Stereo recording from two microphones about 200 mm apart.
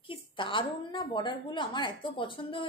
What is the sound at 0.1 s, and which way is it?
A woman's voice, 25° left (ahead or behind).